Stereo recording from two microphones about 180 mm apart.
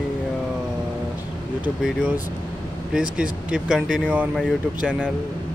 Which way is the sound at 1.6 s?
5° right (ahead or behind).